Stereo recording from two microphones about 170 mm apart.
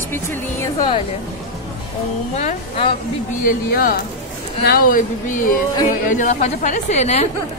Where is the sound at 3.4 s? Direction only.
55° left (ahead or behind); by 7.3 s 40° left (ahead or behind).